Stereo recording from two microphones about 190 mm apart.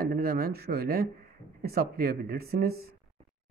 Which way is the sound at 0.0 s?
50° right (ahead or behind).